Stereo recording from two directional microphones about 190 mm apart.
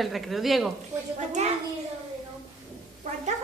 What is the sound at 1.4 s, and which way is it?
Speech, 35° right (ahead or behind).